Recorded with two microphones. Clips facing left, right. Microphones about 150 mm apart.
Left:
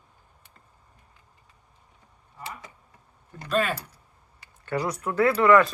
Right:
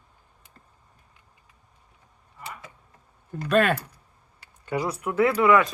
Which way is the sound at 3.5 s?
65° right (ahead or behind).